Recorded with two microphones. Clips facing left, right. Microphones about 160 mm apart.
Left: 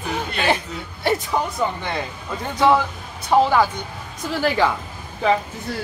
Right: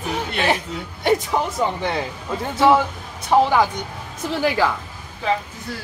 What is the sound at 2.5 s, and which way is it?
Speech, 5° right (ahead or behind).